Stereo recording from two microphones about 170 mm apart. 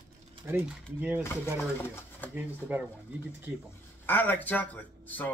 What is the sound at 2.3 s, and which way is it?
Speech, 10° right (ahead or behind).